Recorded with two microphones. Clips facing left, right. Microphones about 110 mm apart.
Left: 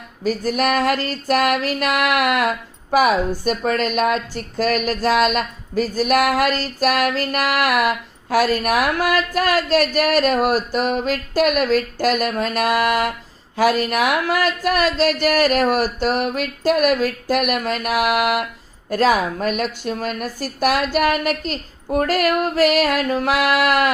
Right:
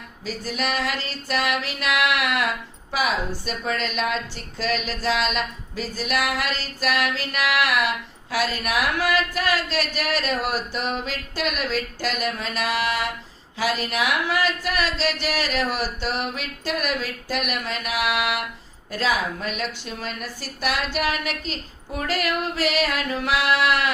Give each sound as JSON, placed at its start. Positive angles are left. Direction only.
{"t": 0.3, "sound": "music", "side_deg": 50}